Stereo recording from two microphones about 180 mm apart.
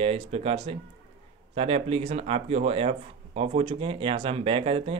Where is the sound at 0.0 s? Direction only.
35° right (ahead or behind).